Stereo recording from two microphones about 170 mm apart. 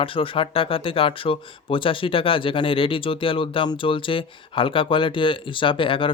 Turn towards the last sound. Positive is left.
turn(degrees=30)  # may be behind; listen again after turning